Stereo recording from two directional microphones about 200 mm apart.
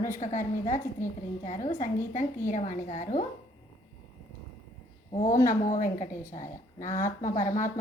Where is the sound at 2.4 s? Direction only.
40° left (ahead or behind).